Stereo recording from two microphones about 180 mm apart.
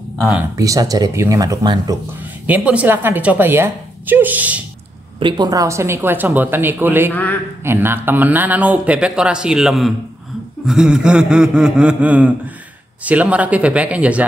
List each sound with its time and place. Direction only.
0.6 s speech: 20° right (ahead or behind)
2.4 s speech: 10° right (ahead or behind)
5.2 s speech: 20° right (ahead or behind)
7.1 s a man's voice: 10° left (ahead or behind)
7.6 s speech: 10° right (ahead or behind)
10.6 s a sound: 5° right (ahead or behind)
13.0 s speech: 10° right (ahead or behind)